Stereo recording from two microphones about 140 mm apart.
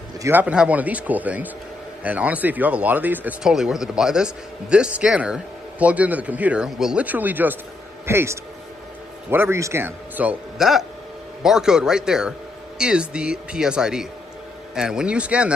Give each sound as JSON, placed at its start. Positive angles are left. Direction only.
{"t": 0.2, "sound": "speech", "side_deg": -15}